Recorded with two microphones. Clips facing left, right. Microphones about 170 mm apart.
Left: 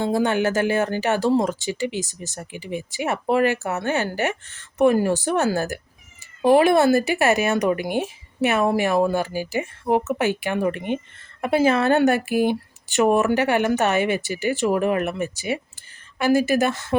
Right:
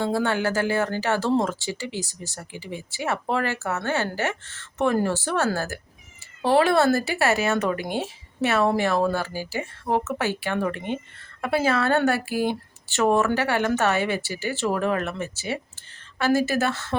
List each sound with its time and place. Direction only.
0.0 s speech: 15° left (ahead or behind)